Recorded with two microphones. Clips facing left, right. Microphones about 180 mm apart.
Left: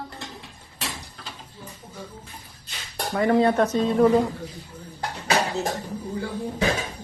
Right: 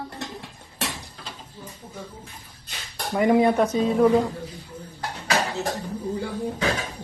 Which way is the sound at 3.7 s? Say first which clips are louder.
Left 1 dB; centre (ahead or behind).